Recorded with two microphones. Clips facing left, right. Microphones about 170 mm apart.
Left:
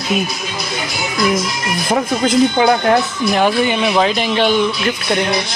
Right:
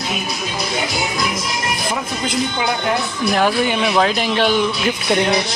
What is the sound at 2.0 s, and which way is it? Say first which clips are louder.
Speech: left 8 dB; 45° left (ahead or behind).